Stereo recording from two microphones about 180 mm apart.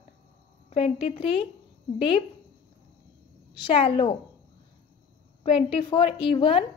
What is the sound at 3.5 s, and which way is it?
Speech, 30° left (ahead or behind).